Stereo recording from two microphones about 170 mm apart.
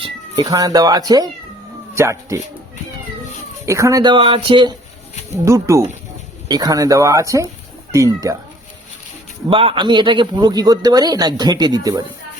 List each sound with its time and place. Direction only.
0.3 s speech: 20° right (ahead or behind)
3.7 s speech: 20° right (ahead or behind)
5.5 s speech: 15° right (ahead or behind)
9.5 s speech: 30° right (ahead or behind)